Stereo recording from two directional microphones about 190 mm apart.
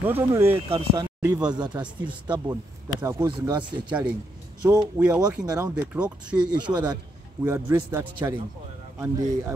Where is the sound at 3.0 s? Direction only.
15° right (ahead or behind).